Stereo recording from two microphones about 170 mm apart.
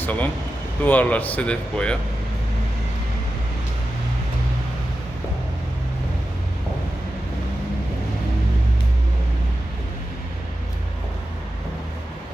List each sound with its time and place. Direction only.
0.0 s speech: 10° left (ahead or behind)